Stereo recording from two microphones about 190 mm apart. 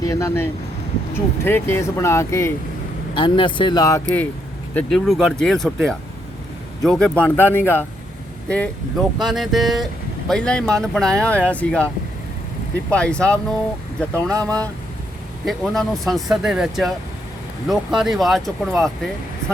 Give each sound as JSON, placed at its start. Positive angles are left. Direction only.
{"t": 0.0, "sound": "speech", "side_deg": 15}
{"t": 3.2, "sound": "speech", "side_deg": 25}
{"t": 4.7, "sound": "speech", "side_deg": 5}
{"t": 12.9, "sound": "speech", "side_deg": 5}